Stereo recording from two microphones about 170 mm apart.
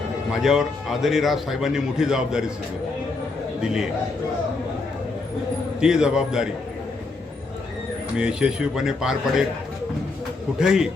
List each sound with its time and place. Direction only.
0.3 s a man's voice: centre (ahead or behind)
3.6 s a man's voice: 5° right (ahead or behind)
5.8 s a man's voice: 5° right (ahead or behind)
8.1 s a man's voice: 5° right (ahead or behind)
10.6 s a man's voice: centre (ahead or behind)